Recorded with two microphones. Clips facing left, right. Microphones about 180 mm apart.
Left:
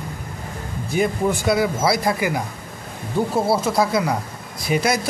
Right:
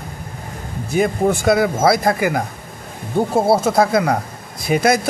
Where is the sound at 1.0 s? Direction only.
50° right (ahead or behind).